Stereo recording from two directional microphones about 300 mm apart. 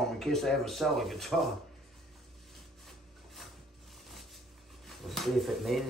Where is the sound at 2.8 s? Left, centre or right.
Centre.